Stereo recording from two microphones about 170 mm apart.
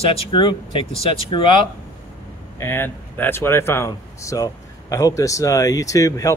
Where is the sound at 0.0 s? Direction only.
35° left (ahead or behind).